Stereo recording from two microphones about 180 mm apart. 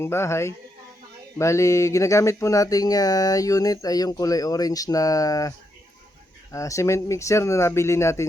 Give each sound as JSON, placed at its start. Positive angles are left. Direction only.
{"t": 0.0, "sound": "speech", "side_deg": 15}